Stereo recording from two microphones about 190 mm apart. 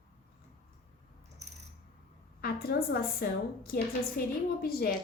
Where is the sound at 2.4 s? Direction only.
55° left (ahead or behind).